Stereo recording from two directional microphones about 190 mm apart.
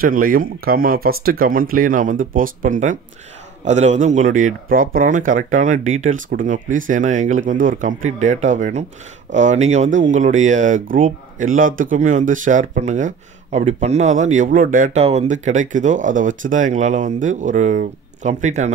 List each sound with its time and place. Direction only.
0.0 s speech: 50° right (ahead or behind)